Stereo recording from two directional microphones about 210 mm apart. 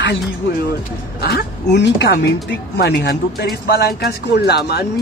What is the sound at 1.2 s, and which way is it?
A man's voice, 50° left (ahead or behind).